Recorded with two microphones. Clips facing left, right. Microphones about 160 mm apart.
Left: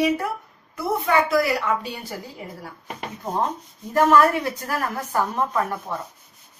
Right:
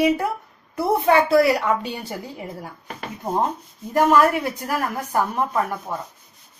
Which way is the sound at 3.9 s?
15° right (ahead or behind).